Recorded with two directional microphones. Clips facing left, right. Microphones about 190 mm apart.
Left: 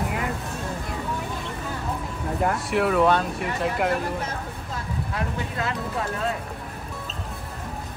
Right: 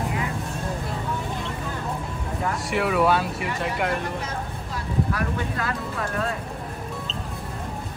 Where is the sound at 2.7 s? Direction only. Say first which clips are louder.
Even; 5° right (ahead or behind).